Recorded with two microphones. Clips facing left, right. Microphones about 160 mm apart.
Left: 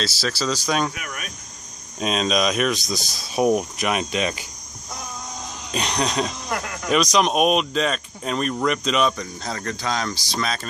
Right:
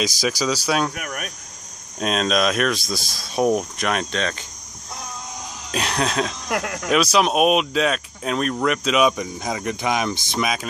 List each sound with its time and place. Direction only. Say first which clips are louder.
0.0 s speech: right 3 dB; 15° right (ahead or behind)
0.9 s speech: right 4 dB; 50° right (ahead or behind)
2.0 s speech: right 1 dB; centre (ahead or behind)
5.7 s speech: right 1 dB; 5° right (ahead or behind)
6.5 s speech: right 3 dB; 60° right (ahead or behind)
6.9 s speech: right 1 dB; 5° right (ahead or behind)